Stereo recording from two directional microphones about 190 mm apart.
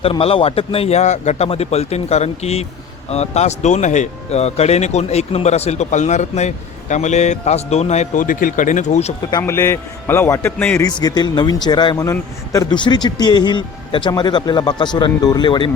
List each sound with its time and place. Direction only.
0.0 s speech: 30° left (ahead or behind)
9.4 s a man's voice: 15° left (ahead or behind)
10.8 s speech: 20° left (ahead or behind)